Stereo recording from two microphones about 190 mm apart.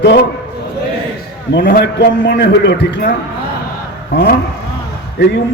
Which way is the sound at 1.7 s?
60° left (ahead or behind).